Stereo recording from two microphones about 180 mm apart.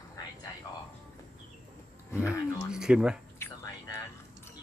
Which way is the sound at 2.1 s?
5° right (ahead or behind).